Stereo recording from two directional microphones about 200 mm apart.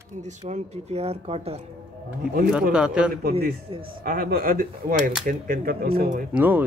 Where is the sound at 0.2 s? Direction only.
35° right (ahead or behind).